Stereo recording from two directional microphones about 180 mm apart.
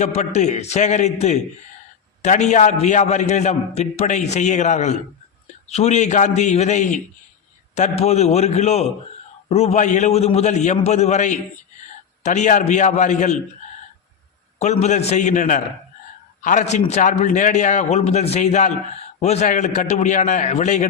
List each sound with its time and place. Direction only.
0.0 s a man's voice: 40° left (ahead or behind)
14.6 s a man's voice: 40° left (ahead or behind)